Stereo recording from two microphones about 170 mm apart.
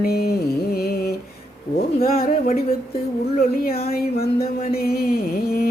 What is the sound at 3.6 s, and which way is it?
Speech, 65° left (ahead or behind).